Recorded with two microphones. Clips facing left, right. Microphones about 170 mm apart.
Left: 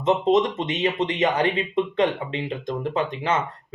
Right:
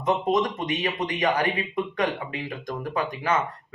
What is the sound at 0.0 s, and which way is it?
Speech, 25° left (ahead or behind).